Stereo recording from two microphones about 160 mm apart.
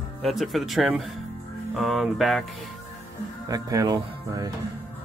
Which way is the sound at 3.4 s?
20° right (ahead or behind).